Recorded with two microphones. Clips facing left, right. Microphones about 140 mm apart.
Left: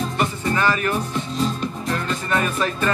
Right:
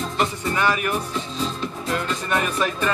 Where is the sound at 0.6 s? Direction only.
10° right (ahead or behind).